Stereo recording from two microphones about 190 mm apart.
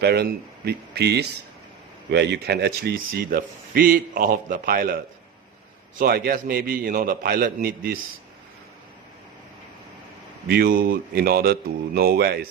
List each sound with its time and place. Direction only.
0.0 s a man's voice: 55° right (ahead or behind)
10.5 s a man's voice: 50° right (ahead or behind)